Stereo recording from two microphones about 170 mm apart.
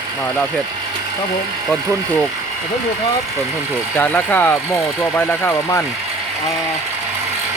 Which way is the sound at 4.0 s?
10° left (ahead or behind).